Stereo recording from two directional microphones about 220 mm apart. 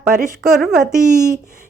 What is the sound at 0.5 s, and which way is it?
Speech, centre (ahead or behind).